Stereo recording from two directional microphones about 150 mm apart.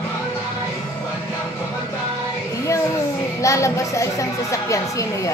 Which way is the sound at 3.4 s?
20° left (ahead or behind).